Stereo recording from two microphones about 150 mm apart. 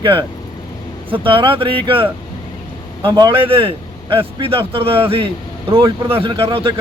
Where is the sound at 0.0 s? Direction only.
35° right (ahead or behind).